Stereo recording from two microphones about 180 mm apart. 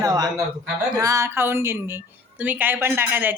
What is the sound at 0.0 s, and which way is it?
A man's voice, 20° right (ahead or behind).